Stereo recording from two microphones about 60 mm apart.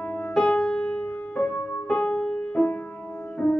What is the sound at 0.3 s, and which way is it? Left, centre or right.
Music, centre.